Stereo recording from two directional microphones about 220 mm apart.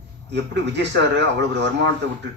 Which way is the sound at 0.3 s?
50° right (ahead or behind).